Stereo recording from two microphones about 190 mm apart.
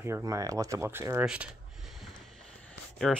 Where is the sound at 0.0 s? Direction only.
15° right (ahead or behind).